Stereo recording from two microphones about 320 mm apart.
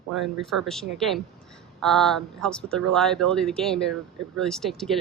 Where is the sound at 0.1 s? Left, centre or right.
Centre.